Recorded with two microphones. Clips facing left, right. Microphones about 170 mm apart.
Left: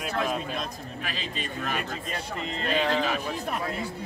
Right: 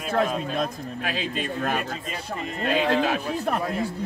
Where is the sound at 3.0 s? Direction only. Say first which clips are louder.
Right 4 dB; 50° right (ahead or behind).